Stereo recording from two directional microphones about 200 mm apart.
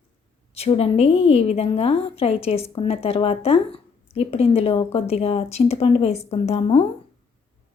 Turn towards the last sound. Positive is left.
turn(degrees=30)  # may be behind; listen again after turning